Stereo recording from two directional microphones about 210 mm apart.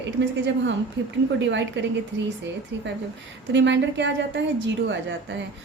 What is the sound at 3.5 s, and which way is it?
A woman's voice, 60° right (ahead or behind).